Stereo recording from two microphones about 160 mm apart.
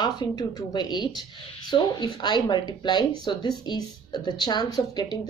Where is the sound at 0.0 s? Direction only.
25° left (ahead or behind).